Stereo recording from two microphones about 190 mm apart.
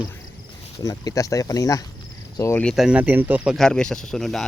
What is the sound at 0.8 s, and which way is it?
Speech, 15° left (ahead or behind).